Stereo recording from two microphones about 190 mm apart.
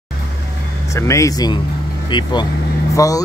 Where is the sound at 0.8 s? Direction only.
15° left (ahead or behind).